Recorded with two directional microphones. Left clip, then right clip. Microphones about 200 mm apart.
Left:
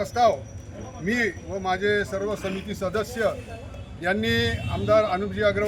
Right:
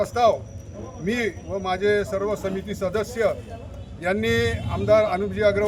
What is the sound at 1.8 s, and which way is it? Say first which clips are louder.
A man's voice: right 5 dB; 25° right (ahead or behind).